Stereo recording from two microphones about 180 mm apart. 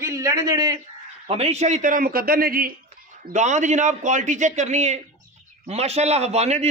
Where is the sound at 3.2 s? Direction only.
40° right (ahead or behind).